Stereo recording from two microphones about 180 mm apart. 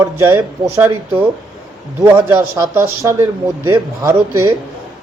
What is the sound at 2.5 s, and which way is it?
Speech, 10° right (ahead or behind).